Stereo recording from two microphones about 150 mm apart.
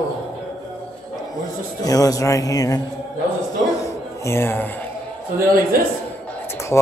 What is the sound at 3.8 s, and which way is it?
Music, 20° left (ahead or behind).